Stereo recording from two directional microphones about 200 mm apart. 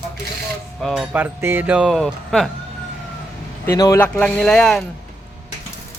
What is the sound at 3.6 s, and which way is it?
Speech, 15° left (ahead or behind).